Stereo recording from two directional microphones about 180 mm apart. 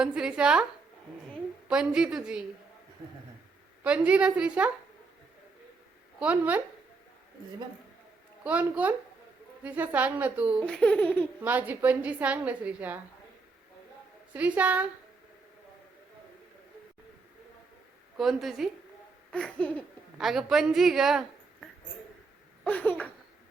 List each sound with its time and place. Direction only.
0.0 s a woman's voice: 5° right (ahead or behind)
1.6 s a woman's voice: 5° right (ahead or behind)
3.8 s a woman's voice: 5° right (ahead or behind)
6.1 s a woman's voice: 10° right (ahead or behind)
8.4 s a woman's voice: 10° right (ahead or behind)
10.8 s baby laughter: 5° left (ahead or behind)
11.4 s a woman's voice: 10° right (ahead or behind)
14.3 s a woman's voice: 10° right (ahead or behind)
18.2 s a woman's voice: centre (ahead or behind)
19.3 s baby laughter: 5° left (ahead or behind)
20.1 s a woman's voice: centre (ahead or behind)
22.6 s baby laughter: 10° left (ahead or behind)